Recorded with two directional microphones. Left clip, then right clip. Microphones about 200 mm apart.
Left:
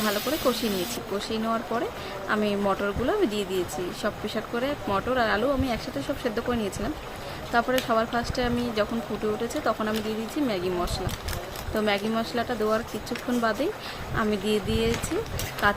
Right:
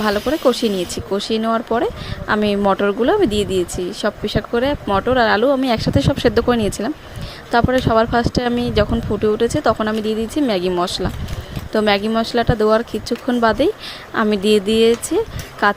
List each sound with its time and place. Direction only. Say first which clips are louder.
0.0 s speech: right 9 dB; 35° right (ahead or behind)